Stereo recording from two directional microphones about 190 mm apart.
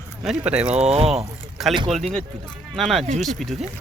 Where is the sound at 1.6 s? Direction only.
Centre (ahead or behind).